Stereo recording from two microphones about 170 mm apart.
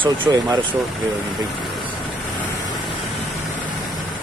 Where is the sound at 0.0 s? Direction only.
25° right (ahead or behind).